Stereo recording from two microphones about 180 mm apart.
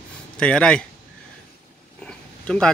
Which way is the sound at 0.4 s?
5° left (ahead or behind).